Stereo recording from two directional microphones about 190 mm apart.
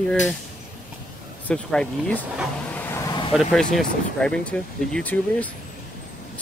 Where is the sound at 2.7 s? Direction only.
15° left (ahead or behind).